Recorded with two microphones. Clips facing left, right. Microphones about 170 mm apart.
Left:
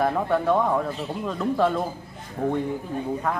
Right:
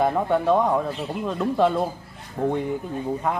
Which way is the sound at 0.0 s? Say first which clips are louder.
Right 2 dB; 15° right (ahead or behind).